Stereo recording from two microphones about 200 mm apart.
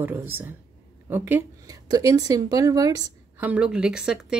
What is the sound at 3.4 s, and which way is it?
Speech, 5° right (ahead or behind).